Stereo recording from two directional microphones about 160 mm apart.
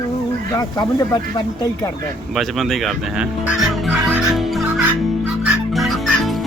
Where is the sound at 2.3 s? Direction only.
Centre (ahead or behind).